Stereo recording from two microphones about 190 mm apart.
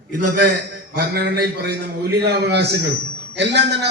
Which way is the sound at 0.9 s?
55° right (ahead or behind).